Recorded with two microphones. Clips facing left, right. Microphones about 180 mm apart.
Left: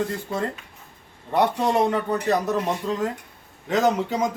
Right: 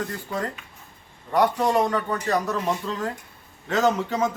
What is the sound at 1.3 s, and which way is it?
A man's voice, 25° left (ahead or behind).